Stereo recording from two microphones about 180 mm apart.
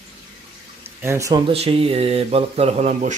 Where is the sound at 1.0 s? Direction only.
15° right (ahead or behind).